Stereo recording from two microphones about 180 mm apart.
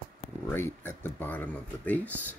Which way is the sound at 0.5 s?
10° left (ahead or behind).